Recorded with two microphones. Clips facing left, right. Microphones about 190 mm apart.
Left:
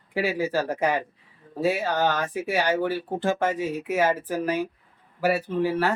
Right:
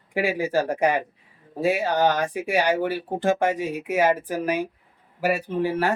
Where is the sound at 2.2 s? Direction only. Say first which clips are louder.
Right 2 dB; 15° right (ahead or behind).